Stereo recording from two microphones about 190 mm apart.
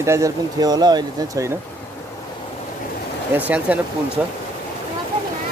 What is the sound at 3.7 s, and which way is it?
Speech, 10° right (ahead or behind).